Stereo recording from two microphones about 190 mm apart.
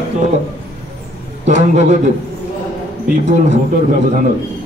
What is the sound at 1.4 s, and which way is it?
Speech, 35° right (ahead or behind).